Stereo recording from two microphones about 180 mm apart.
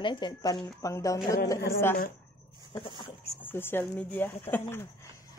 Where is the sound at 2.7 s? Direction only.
30° left (ahead or behind).